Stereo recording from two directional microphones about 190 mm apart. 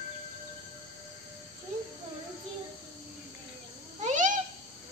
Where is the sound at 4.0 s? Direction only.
40° right (ahead or behind).